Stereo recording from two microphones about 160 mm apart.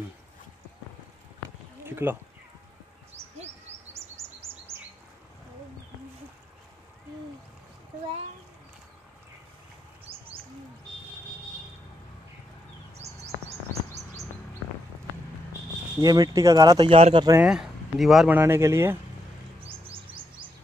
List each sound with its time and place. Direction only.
1.8 s a sound: 15° right (ahead or behind)
3.2 s bird: 15° right (ahead or behind)
12.9 s a sound: 40° right (ahead or behind)
16.0 s speech: 25° right (ahead or behind)
17.4 s speech: 5° right (ahead or behind)
18.4 s speech: 15° right (ahead or behind)
19.9 s chirp: 30° right (ahead or behind)